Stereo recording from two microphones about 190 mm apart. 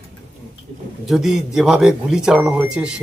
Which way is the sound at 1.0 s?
Centre (ahead or behind).